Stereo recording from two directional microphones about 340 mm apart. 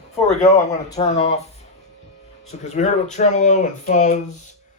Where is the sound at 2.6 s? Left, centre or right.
Centre.